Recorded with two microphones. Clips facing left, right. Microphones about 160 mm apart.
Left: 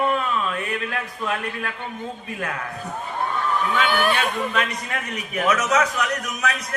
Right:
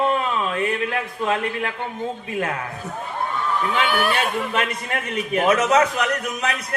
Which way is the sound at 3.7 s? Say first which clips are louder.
Even; 10° right (ahead or behind).